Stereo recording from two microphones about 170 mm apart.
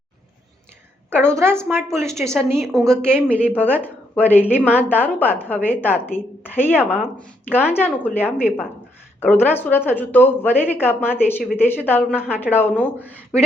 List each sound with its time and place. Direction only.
1.4 s a woman's voice: 15° right (ahead or behind)
2.7 s a woman's voice: 5° left (ahead or behind)